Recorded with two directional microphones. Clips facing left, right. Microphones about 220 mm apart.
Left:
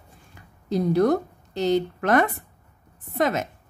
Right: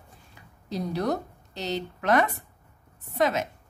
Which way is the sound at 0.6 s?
50° left (ahead or behind).